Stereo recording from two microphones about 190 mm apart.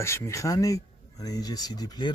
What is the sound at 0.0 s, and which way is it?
Speech, 15° left (ahead or behind).